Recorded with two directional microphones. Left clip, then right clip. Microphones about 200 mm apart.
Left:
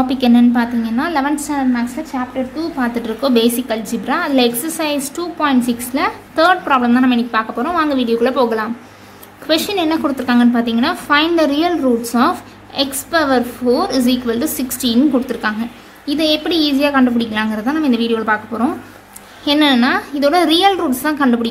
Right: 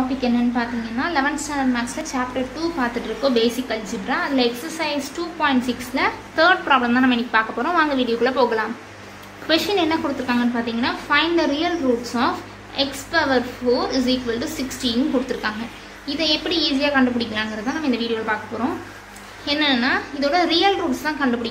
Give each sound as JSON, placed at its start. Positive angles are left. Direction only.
{"t": 0.2, "sound": "a woman's voice", "side_deg": 40}
{"t": 2.8, "sound": "a woman's voice", "side_deg": 40}
{"t": 19.4, "sound": "a woman's voice", "side_deg": 40}